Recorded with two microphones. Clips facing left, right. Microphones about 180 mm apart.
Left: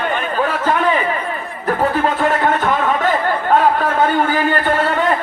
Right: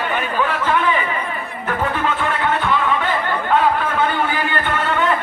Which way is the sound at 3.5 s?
40° left (ahead or behind).